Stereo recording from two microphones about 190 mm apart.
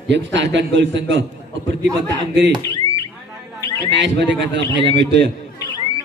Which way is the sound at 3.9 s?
70° right (ahead or behind).